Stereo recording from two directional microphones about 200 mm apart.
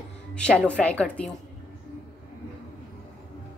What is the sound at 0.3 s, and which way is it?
Speech, 5° left (ahead or behind).